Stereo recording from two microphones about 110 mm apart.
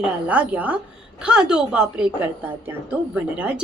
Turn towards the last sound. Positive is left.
turn(degrees=-10)  # may be behind; listen again after turning